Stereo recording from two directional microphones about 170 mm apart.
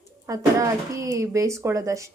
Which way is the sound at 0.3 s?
20° right (ahead or behind).